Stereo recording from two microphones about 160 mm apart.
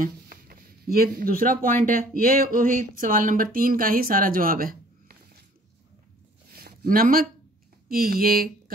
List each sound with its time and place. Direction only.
0.0 s speech: 60° right (ahead or behind)
6.5 s a sound: 70° right (ahead or behind)
7.9 s speech: 65° right (ahead or behind)